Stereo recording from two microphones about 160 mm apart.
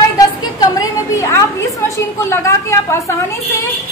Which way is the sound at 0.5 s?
20° left (ahead or behind).